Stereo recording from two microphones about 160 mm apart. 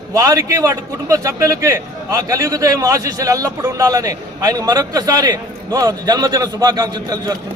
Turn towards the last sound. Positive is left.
turn(degrees=-25)  # may be behind; listen again after turning